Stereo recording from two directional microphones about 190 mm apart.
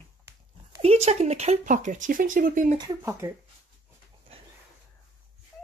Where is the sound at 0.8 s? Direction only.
35° right (ahead or behind).